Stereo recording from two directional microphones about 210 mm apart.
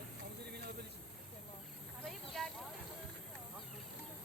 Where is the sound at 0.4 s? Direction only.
50° right (ahead or behind).